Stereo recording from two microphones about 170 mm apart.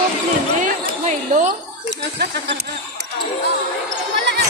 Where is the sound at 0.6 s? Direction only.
50° right (ahead or behind).